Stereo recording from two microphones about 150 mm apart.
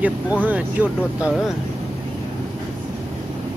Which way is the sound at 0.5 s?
10° right (ahead or behind).